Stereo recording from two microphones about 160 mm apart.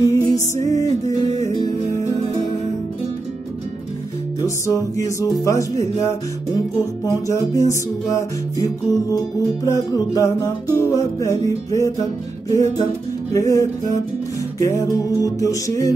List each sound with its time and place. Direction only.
0.0 s music: 20° left (ahead or behind)
4.4 s music: 20° left (ahead or behind)